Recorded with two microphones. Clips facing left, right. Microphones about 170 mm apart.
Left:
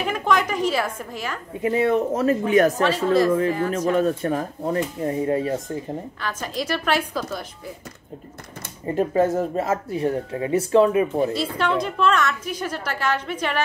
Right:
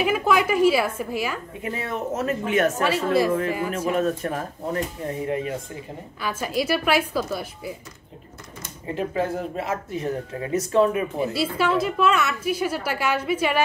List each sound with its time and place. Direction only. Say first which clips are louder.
0.0 s a woman's voice: right 1 dB; 5° right (ahead or behind)
1.6 s speech: left 11 dB; 30° left (ahead or behind)
2.8 s a woman's voice: left 2 dB; 10° right (ahead or behind)
3.9 s speech: left 2 dB; 35° left (ahead or behind)
6.2 s a woman's voice: right 4 dB; 10° right (ahead or behind)
8.9 s speech: left 6 dB; 45° left (ahead or behind); by 11.1 s 25° left (ahead or behind)
11.1 s a woman's voice: left 1 dB; 10° right (ahead or behind)